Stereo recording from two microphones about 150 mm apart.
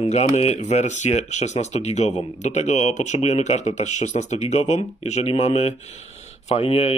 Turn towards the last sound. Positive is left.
turn(degrees=40)  # may be behind; listen again after turning